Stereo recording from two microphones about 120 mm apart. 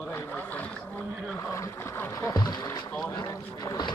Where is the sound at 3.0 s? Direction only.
35° left (ahead or behind).